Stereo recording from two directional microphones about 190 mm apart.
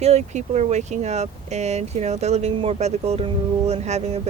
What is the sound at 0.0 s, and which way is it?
Speech, 35° right (ahead or behind).